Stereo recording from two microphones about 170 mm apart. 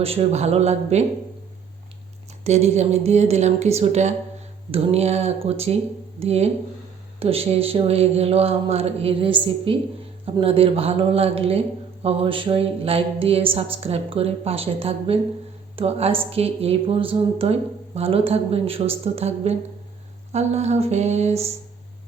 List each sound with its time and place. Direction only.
0.0 s speech: 35° right (ahead or behind)
2.4 s speech: 40° right (ahead or behind)